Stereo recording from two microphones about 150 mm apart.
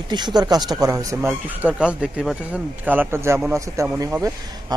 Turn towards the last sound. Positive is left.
turn(degrees=-20)  # may be behind; listen again after turning